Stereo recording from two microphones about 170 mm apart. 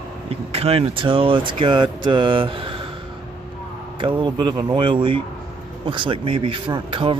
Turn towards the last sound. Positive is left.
turn(degrees=-30)  # may be behind; listen again after turning